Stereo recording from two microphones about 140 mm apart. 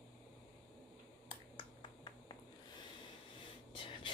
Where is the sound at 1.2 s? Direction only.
35° left (ahead or behind).